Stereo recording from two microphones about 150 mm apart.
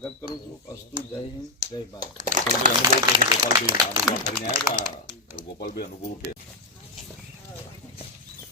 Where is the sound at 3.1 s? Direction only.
25° right (ahead or behind).